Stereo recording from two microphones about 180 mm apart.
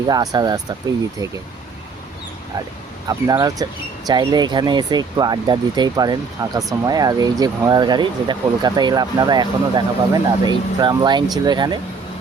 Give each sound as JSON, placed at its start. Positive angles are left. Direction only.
{"t": 0.1, "sound": "speech", "side_deg": -20}
{"t": 3.1, "sound": "speech", "side_deg": -20}